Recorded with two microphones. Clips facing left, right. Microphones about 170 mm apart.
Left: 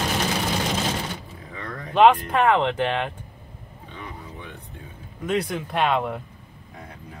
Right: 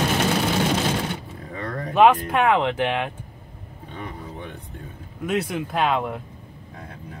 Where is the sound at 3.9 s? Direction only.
50° right (ahead or behind).